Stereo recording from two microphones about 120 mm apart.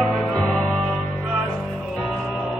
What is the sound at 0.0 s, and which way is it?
Music, 5° left (ahead or behind).